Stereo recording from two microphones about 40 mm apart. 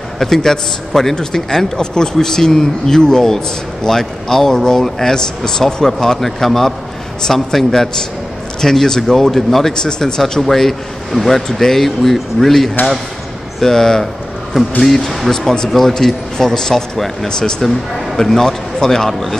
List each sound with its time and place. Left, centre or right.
0.2 s speech: centre
9.8 s speech: centre
17.3 s speech: centre
17.6 s speech: centre
18.1 s speech: centre